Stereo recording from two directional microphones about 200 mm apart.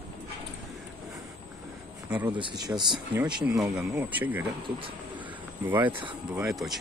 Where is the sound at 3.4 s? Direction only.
5° right (ahead or behind).